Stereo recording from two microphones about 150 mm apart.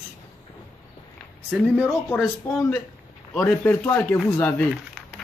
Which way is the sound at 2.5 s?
15° left (ahead or behind).